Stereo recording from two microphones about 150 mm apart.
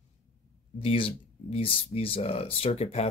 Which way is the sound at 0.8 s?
40° left (ahead or behind).